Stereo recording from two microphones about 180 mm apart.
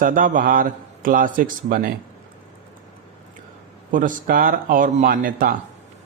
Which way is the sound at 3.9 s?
50° right (ahead or behind).